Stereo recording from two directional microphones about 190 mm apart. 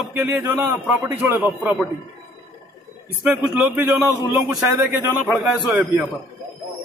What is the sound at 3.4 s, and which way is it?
Speech, 5° right (ahead or behind).